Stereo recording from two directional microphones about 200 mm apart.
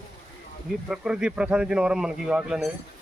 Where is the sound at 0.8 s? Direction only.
5° right (ahead or behind).